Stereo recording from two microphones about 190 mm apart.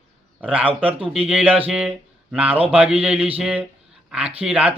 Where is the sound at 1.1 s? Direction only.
5° right (ahead or behind).